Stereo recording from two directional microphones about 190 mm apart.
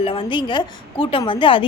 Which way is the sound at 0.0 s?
25° left (ahead or behind).